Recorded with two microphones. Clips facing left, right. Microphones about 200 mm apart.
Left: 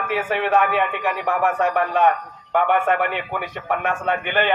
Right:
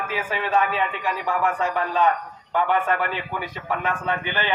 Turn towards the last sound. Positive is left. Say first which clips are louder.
# left 5 dB
turn(degrees=60)  # may be behind; listen again after turning